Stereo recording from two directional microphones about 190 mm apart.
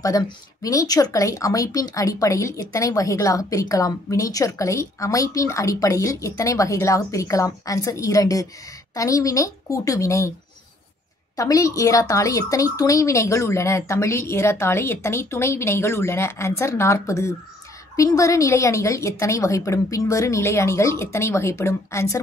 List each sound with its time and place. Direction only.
0.0 s speech: 20° left (ahead or behind)
11.3 s speech: 20° left (ahead or behind)